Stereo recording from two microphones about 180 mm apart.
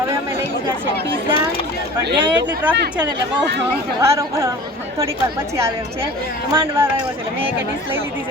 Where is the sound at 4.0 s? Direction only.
15° right (ahead or behind).